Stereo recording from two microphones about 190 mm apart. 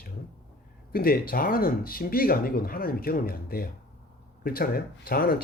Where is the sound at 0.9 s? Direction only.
50° left (ahead or behind).